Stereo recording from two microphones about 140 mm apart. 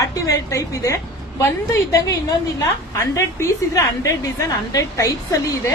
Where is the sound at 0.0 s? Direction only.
25° left (ahead or behind).